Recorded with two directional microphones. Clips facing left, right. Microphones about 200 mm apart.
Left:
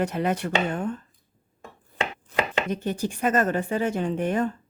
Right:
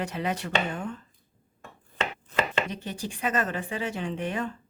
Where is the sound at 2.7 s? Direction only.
45° left (ahead or behind).